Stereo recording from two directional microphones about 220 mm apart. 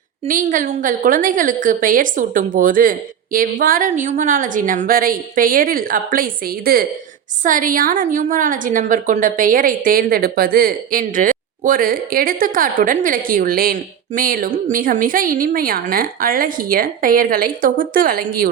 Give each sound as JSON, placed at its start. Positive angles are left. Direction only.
{"t": 0.3, "sound": "a woman's voice", "side_deg": -40}